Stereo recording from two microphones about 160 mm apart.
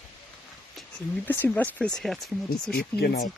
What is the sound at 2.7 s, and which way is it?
Speech, 90° left.